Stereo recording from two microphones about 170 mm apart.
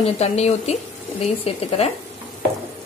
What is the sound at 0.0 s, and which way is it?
A woman's voice, 40° left (ahead or behind).